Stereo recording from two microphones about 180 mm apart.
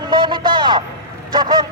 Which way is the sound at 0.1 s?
25° right (ahead or behind).